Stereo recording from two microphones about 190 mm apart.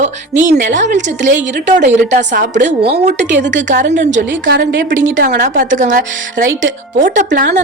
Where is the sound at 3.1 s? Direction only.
70° right (ahead or behind); by 6.0 s 45° right (ahead or behind).